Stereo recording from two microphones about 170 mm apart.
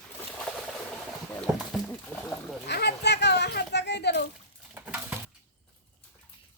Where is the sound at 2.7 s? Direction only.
80° left.